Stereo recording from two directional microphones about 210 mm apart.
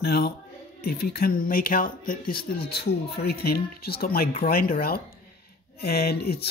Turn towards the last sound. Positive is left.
turn(degrees=50)  # may be behind; listen again after turning